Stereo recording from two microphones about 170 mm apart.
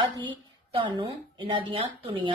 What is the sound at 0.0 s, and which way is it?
A woman's voice, 30° right (ahead or behind).